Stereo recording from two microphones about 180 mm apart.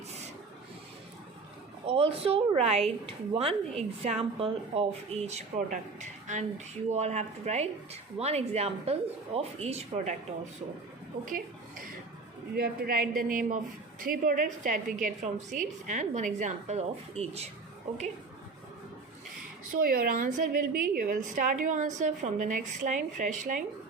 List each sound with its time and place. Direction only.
1.9 s speech: 35° right (ahead or behind)
12.5 s a woman's voice: 55° right (ahead or behind); by 17.4 s 35° right (ahead or behind)
19.7 s a woman's voice: 55° right (ahead or behind)